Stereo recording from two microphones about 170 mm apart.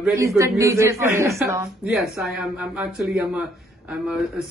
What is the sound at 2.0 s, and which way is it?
Speech, centre (ahead or behind).